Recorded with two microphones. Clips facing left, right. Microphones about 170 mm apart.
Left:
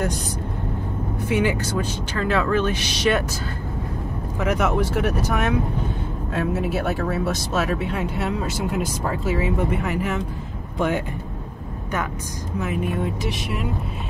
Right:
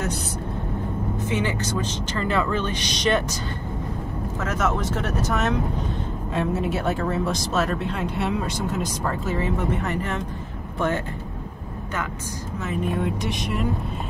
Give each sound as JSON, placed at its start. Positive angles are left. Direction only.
{"t": 1.2, "sound": "speech", "side_deg": 10}
{"t": 4.4, "sound": "speech", "side_deg": 15}
{"t": 12.5, "sound": "speech", "side_deg": 10}